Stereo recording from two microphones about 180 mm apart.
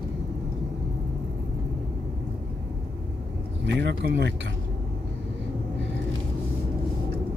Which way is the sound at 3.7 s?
70° right (ahead or behind).